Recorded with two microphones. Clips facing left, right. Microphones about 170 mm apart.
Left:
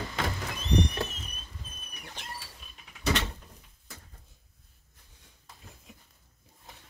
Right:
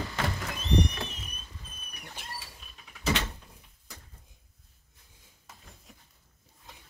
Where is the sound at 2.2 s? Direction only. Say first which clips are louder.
Left 1 dB; 10° right (ahead or behind).